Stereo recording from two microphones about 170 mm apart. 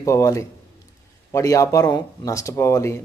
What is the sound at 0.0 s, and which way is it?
Speech, 20° left (ahead or behind).